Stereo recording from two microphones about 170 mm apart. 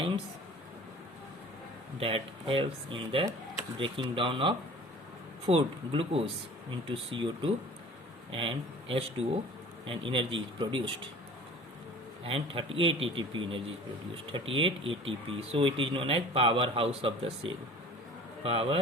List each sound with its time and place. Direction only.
2.0 s a man's voice: 35° right (ahead or behind)
12.2 s a man's voice: 35° right (ahead or behind)